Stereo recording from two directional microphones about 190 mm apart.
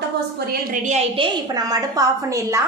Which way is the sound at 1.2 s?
20° right (ahead or behind).